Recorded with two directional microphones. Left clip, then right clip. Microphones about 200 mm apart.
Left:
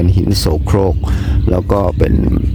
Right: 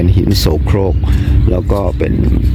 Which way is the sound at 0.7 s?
20° left (ahead or behind).